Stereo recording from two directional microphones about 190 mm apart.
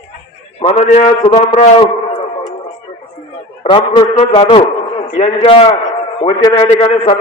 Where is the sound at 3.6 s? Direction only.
30° left (ahead or behind).